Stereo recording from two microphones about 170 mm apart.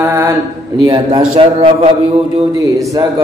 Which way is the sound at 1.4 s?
35° right (ahead or behind).